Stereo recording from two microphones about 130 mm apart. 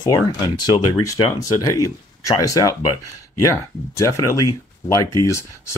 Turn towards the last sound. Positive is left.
turn(degrees=20)  # may be behind; listen again after turning